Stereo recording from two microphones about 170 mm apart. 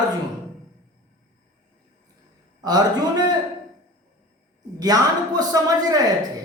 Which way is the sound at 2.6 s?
25° right (ahead or behind).